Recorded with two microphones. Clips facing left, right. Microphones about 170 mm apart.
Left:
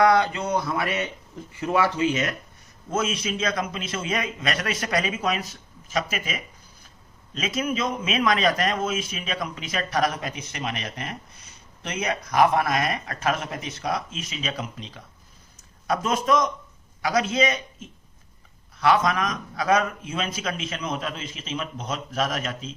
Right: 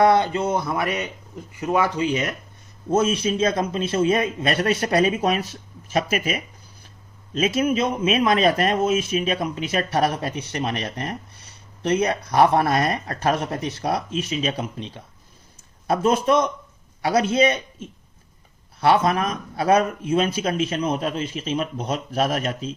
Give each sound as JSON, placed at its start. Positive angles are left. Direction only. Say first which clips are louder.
{"t": 0.0, "sound": "speech", "louder": "right 2 dB", "side_deg": -25}
{"t": 3.0, "sound": "speech", "louder": "right 5 dB", "side_deg": -30}
{"t": 7.3, "sound": "speech", "louder": "right 6 dB", "side_deg": -30}
{"t": 18.8, "sound": "speech", "louder": "right 3 dB", "side_deg": -30}
{"t": 21.2, "sound": "speech", "louder": "right 7 dB", "side_deg": -45}
{"t": 21.8, "sound": "speech", "louder": "right 4 dB", "side_deg": -35}